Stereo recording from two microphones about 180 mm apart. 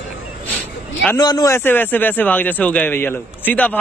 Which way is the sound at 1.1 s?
20° left (ahead or behind).